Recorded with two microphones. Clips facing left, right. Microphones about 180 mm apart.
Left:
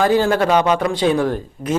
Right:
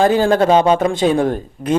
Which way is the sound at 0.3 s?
25° right (ahead or behind).